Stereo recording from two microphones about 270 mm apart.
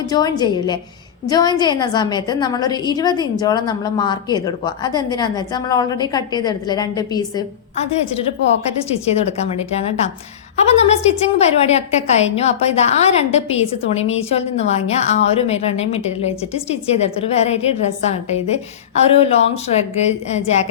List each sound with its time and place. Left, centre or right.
0.1 s a woman's voice: centre
8.9 s a woman's voice: left